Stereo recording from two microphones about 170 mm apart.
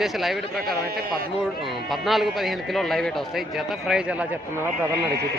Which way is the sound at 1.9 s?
Centre (ahead or behind).